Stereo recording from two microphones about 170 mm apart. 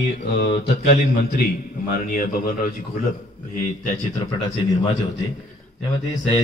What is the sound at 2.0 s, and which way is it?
Speech, 55° left (ahead or behind).